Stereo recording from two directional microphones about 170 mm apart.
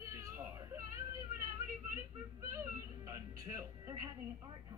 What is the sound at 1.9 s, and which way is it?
Music, 20° right (ahead or behind).